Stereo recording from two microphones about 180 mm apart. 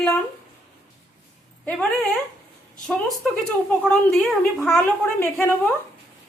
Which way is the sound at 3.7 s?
5° left (ahead or behind).